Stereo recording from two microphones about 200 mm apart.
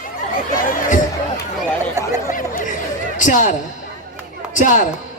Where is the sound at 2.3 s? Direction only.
40° left (ahead or behind).